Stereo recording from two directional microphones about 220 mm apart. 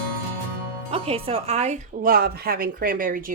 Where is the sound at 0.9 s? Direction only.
25° right (ahead or behind).